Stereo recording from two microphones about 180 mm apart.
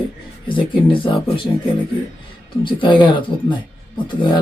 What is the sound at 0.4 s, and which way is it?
Speech, 30° left (ahead or behind).